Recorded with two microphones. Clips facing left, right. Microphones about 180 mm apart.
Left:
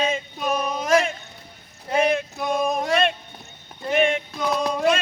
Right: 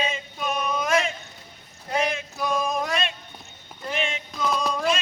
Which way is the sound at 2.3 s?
25° left (ahead or behind).